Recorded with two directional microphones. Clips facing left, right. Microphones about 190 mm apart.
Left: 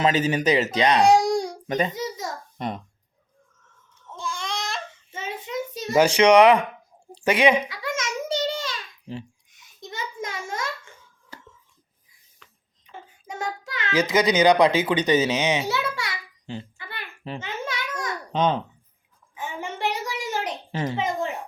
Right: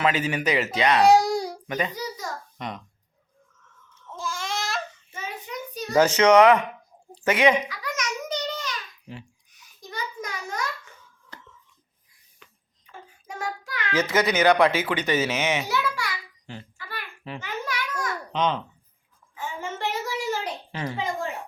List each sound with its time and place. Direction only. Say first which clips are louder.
0.0 s speech: left 3 dB; 20° left (ahead or behind)
1.0 s baby cry: even; centre (ahead or behind)
1.6 s a child's voice: left 4 dB; 30° left (ahead or behind)
2.6 s speech: left 8 dB; 35° left (ahead or behind)
4.1 s baby cry: even; centre (ahead or behind)
5.1 s child singing: left 5 dB; 25° left (ahead or behind)
6.0 s a child's voice: left 1 dB; 10° left (ahead or behind)
7.7 s a sound: left 2 dB; 25° left (ahead or behind)
12.4 s a sound: right 2 dB; 5° right (ahead or behind)
12.8 s child singing: left 2 dB; 25° left (ahead or behind)
13.9 s a sound: left 2 dB; 10° left (ahead or behind)
18.3 s a child's voice: left 3 dB; 40° left (ahead or behind)
19.3 s a sound: even; 20° left (ahead or behind)